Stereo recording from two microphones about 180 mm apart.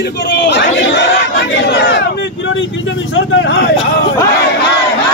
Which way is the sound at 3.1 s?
90° left.